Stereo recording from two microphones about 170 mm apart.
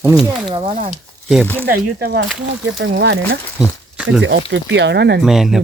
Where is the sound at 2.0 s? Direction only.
65° right (ahead or behind).